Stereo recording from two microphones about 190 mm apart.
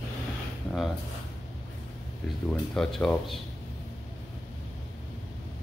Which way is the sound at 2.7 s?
5° left (ahead or behind).